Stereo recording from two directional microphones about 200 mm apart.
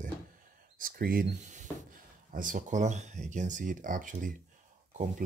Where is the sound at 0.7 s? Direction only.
45° right (ahead or behind).